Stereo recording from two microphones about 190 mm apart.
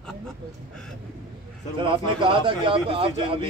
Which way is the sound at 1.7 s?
25° right (ahead or behind).